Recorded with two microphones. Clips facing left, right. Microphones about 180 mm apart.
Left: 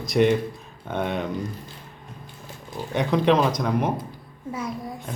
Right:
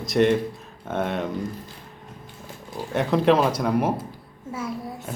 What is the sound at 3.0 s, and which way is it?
A man's voice, centre (ahead or behind).